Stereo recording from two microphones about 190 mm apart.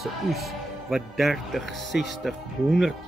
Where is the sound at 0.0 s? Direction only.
Centre (ahead or behind).